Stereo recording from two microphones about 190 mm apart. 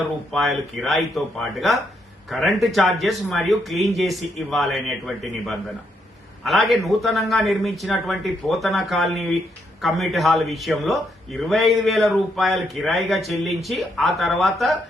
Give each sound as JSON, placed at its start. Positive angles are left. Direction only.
{"t": 0.3, "sound": "a man's voice", "side_deg": 0}